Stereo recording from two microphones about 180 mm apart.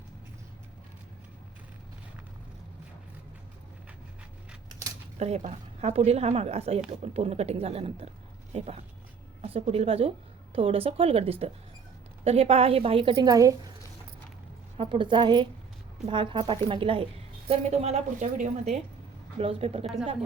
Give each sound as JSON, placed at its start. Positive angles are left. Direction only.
{"t": 5.2, "sound": "a woman's voice", "side_deg": -35}
{"t": 14.8, "sound": "a woman's voice", "side_deg": -30}